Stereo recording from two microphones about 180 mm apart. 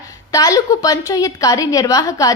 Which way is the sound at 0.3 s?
20° left (ahead or behind).